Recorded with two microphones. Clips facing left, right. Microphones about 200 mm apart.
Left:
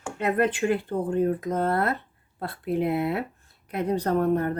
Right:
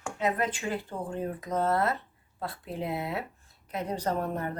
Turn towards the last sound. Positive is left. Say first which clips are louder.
# left 8 dB
turn(degrees=60)  # may be behind; listen again after turning